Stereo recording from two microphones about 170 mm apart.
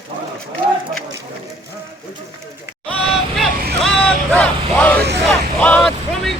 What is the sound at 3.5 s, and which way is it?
Vehicle, 60° right (ahead or behind).